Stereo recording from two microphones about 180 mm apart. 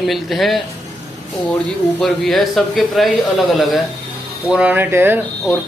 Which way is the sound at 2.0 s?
Centre (ahead or behind).